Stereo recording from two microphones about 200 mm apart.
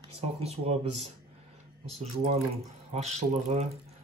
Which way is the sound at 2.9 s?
35° right (ahead or behind).